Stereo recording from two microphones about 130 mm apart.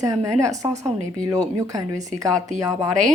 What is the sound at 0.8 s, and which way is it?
A woman's voice, 25° right (ahead or behind).